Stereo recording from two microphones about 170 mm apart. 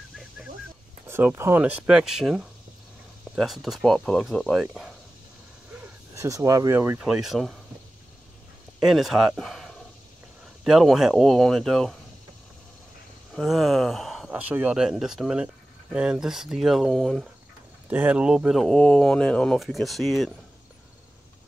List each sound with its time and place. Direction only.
1.0 s speech: 15° right (ahead or behind)
6.1 s speech: 20° right (ahead or behind); by 7.5 s centre (ahead or behind)
8.7 s speech: centre (ahead or behind)
13.3 s speech: centre (ahead or behind)
17.8 s speech: 10° right (ahead or behind)